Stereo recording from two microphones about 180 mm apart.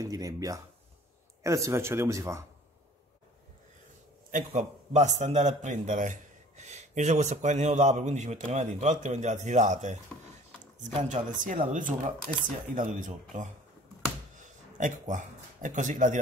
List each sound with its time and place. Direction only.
0.0 s a man's voice: 20° right (ahead or behind)
4.3 s a man's voice: 45° right (ahead or behind)
14.8 s speech: 45° right (ahead or behind)